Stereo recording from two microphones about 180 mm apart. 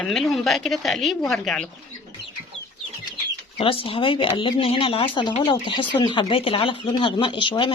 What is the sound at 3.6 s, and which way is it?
Speech, 30° left (ahead or behind).